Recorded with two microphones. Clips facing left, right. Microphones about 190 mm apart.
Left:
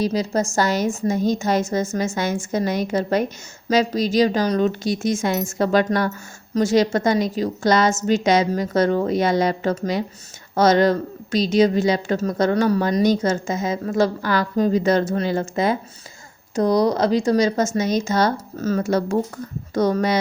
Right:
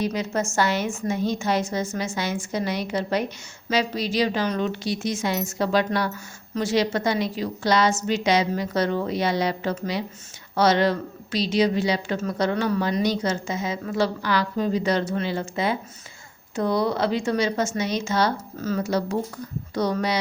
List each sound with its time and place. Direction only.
0.0 s a woman's voice: 35° left (ahead or behind)